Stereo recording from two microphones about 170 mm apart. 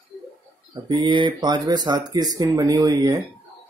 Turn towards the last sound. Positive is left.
turn(degrees=-25)  # may be behind; listen again after turning